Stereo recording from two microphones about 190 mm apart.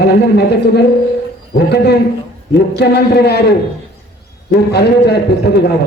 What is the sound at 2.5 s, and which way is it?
Speech, 60° left (ahead or behind).